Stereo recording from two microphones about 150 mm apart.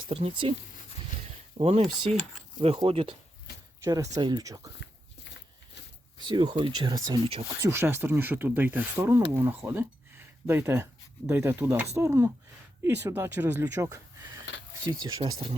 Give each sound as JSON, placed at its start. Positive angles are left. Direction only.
{"t": 0.1, "sound": "speech", "side_deg": -40}
{"t": 1.5, "sound": "speech", "side_deg": -40}
{"t": 3.8, "sound": "speech", "side_deg": -25}
{"t": 6.1, "sound": "speech", "side_deg": -30}
{"t": 7.6, "sound": "speech", "side_deg": -15}
{"t": 9.6, "sound": "a sound", "side_deg": -15}
{"t": 11.3, "sound": "speech", "side_deg": -15}